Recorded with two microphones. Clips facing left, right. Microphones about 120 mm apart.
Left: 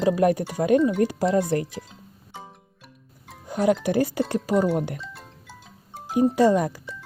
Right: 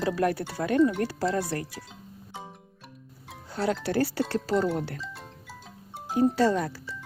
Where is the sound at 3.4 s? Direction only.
15° left (ahead or behind).